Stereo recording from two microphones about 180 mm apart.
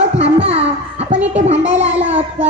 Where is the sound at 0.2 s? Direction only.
35° right (ahead or behind).